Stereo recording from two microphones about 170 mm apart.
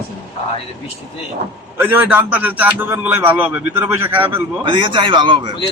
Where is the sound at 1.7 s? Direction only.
10° right (ahead or behind).